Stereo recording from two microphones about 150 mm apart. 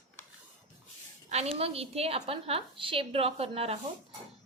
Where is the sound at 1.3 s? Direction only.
45° right (ahead or behind).